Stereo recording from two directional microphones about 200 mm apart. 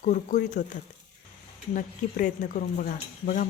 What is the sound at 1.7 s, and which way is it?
Speech, 40° left (ahead or behind).